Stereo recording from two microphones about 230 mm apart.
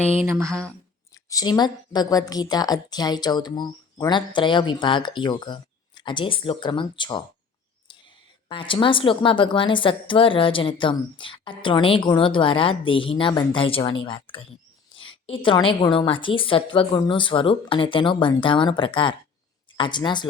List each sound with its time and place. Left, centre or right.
0.3 s speech: centre
1.3 s a woman's voice: centre
8.4 s a woman's voice: left